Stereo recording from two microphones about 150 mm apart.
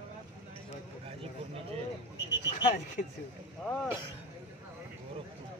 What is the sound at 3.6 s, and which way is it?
Speech, 5° left (ahead or behind).